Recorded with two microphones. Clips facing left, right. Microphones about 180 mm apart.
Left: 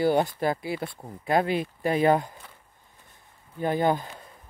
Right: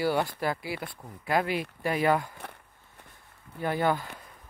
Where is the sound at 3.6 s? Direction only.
20° left (ahead or behind).